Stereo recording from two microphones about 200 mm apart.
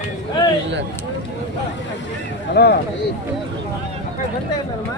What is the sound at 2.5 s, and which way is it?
Speech, 55° left (ahead or behind).